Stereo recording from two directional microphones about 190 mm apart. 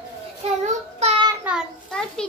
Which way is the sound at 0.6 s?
35° right (ahead or behind).